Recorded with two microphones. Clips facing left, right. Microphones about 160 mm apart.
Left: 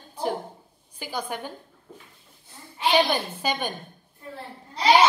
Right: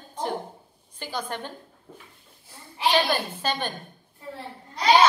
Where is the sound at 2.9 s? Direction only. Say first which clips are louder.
Left 3 dB; 10° left (ahead or behind).